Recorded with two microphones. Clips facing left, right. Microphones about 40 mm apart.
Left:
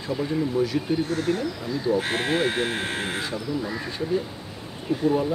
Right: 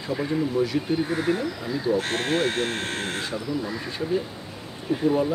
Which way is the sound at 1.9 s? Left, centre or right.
Centre.